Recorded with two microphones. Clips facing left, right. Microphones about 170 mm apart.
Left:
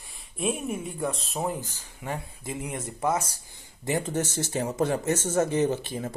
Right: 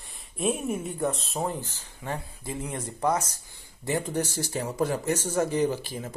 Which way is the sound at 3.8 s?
20° left (ahead or behind).